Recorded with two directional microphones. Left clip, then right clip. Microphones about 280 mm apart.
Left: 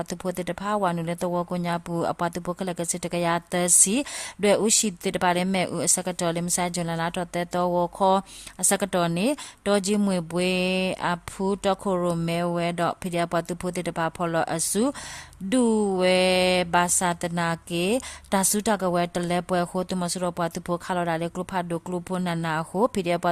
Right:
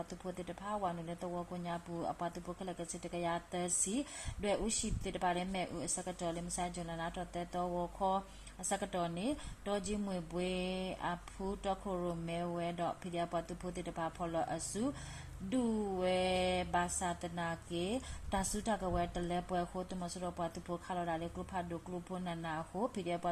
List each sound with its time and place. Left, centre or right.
0.0 s speech: left